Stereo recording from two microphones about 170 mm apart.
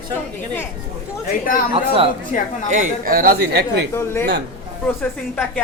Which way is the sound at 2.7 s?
55° right (ahead or behind).